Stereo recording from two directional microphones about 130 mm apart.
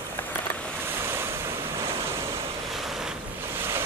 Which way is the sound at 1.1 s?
20° right (ahead or behind).